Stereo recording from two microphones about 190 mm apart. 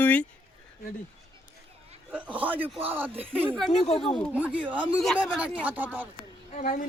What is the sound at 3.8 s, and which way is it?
Speech, 35° left (ahead or behind).